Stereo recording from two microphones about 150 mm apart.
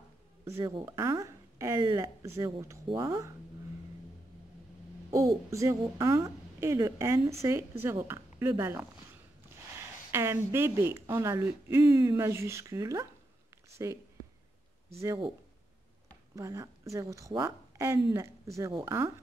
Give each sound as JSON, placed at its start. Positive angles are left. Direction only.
{"t": 0.5, "sound": "a woman's voice", "side_deg": -20}
{"t": 5.1, "sound": "a woman's voice", "side_deg": -20}
{"t": 16.3, "sound": "a woman's voice", "side_deg": -20}